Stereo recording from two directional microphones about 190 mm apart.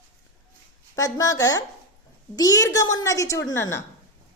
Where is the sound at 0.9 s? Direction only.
20° left (ahead or behind).